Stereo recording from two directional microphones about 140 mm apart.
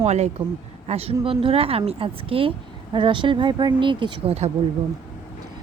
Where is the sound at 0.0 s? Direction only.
50° right (ahead or behind).